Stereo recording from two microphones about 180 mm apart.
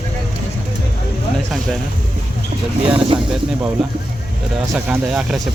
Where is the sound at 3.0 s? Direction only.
30° right (ahead or behind).